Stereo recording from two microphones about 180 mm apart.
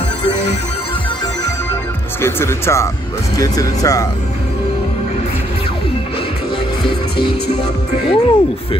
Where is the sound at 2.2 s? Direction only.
15° left (ahead or behind).